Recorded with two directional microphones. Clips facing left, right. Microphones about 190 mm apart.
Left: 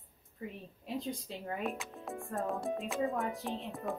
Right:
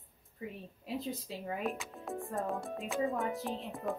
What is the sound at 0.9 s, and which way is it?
Speech, centre (ahead or behind).